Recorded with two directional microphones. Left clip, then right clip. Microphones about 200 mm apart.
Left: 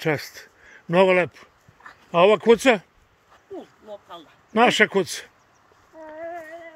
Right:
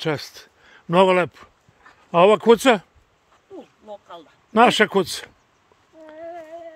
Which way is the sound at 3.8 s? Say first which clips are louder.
Right 1 dB; 50° right (ahead or behind).